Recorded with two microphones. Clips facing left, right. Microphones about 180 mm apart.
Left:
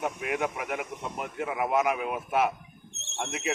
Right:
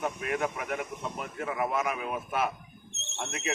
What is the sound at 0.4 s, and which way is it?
A man's voice, 15° left (ahead or behind).